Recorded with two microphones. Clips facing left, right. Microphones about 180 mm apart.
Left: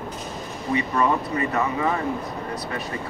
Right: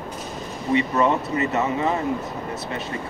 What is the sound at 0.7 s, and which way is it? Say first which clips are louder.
Speech: right 2 dB; 25° right (ahead or behind).